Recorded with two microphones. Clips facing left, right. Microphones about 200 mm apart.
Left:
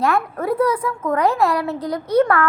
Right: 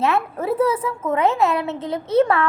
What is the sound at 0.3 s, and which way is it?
Speech, 5° right (ahead or behind).